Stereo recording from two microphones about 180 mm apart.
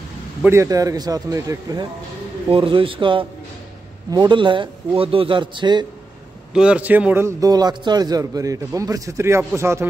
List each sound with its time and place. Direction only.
0.4 s a man's voice: 15° right (ahead or behind)
2.5 s a man's voice: 30° right (ahead or behind)
6.5 s a man's voice: 5° right (ahead or behind)